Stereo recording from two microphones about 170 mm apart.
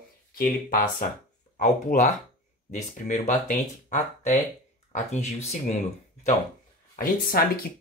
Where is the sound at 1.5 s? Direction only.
40° left (ahead or behind).